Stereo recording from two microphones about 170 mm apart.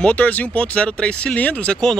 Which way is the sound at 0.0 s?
10° left (ahead or behind).